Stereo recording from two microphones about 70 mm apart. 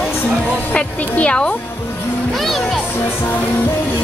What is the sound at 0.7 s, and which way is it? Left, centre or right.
Speech, centre.